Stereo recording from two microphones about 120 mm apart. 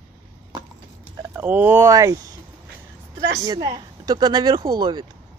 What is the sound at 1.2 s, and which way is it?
Speech, 20° right (ahead or behind).